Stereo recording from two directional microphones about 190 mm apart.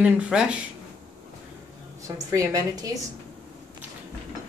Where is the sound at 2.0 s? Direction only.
15° right (ahead or behind).